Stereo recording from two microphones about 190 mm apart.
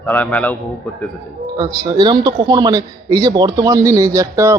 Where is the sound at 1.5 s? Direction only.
20° right (ahead or behind).